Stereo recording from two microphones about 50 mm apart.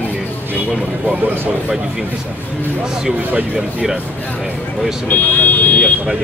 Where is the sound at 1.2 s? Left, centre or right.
Right.